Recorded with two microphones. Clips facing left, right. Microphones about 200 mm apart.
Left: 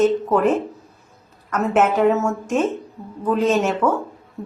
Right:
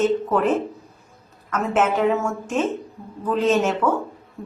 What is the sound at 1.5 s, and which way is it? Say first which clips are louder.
Speech: left 3 dB; 5° left (ahead or behind).